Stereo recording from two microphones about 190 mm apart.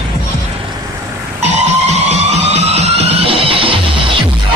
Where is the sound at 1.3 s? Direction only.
35° right (ahead or behind).